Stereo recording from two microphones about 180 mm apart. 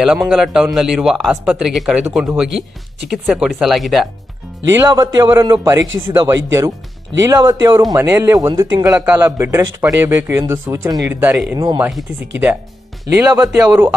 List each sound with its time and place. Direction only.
0.0 s speech: 5° right (ahead or behind)
3.1 s speech: centre (ahead or behind)
4.6 s a man's voice: 20° right (ahead or behind)
8.9 s a man's voice: 10° right (ahead or behind)
11.9 s a man's voice: 5° right (ahead or behind)
13.0 s a man's voice: 20° right (ahead or behind)